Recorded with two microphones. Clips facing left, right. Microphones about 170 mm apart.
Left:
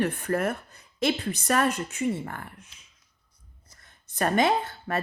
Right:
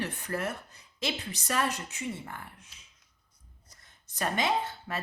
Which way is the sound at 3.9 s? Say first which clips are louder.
Left 6 dB; 55° left (ahead or behind).